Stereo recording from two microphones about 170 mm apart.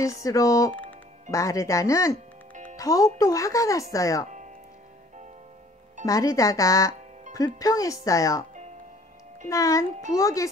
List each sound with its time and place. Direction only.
0.0 s speech: 20° left (ahead or behind)
6.0 s speech: 20° left (ahead or behind)
9.5 s speech: 20° left (ahead or behind)